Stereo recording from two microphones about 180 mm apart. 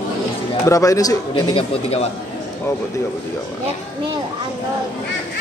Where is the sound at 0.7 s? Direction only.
20° left (ahead or behind).